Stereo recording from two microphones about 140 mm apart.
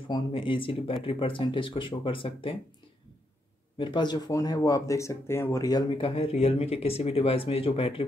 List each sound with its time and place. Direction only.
0.1 s speech: 40° left (ahead or behind)
3.7 s speech: 35° left (ahead or behind)